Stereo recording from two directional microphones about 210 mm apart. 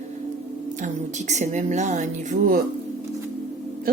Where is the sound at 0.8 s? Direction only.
35° right (ahead or behind).